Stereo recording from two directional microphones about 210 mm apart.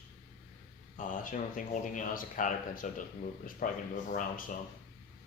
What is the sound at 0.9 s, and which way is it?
Speech, 40° left (ahead or behind).